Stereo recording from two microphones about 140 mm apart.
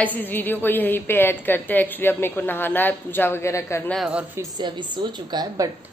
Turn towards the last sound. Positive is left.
turn(degrees=-30)  # may be behind; listen again after turning